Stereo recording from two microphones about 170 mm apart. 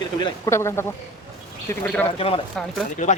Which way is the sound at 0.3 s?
20° left (ahead or behind).